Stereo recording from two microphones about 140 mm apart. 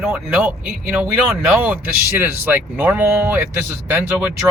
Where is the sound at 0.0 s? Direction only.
5° right (ahead or behind).